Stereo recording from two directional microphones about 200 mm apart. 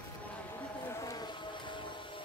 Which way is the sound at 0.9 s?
15° left (ahead or behind).